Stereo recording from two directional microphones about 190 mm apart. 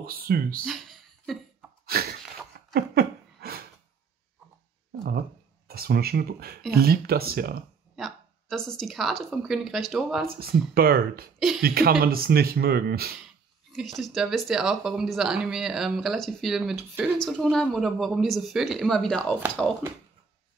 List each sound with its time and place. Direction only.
0.0 s speech: 50° right (ahead or behind)
0.7 s a sound: centre (ahead or behind)
1.9 s sneeze: 55° right (ahead or behind)
2.7 s a sound: 55° right (ahead or behind)
5.7 s speech: 55° right (ahead or behind)
7.9 s a woman's voice: centre (ahead or behind)
10.2 s speech: 50° right (ahead or behind)
11.3 s a sound: centre (ahead or behind)
11.6 s speech: 55° right (ahead or behind)
13.7 s speech: centre (ahead or behind)